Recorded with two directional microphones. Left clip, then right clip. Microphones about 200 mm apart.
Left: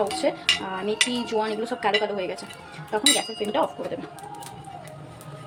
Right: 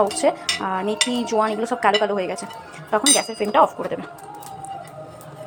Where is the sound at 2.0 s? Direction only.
10° right (ahead or behind).